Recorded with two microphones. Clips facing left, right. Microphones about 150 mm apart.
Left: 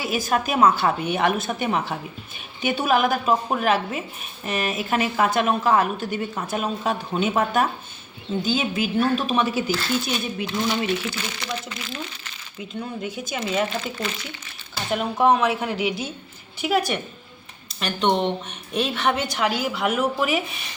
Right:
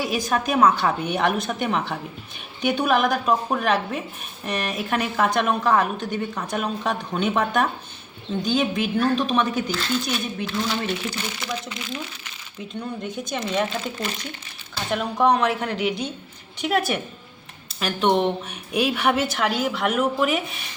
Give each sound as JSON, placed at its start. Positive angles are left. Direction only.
{"t": 0.0, "sound": "a woman's voice", "side_deg": 5}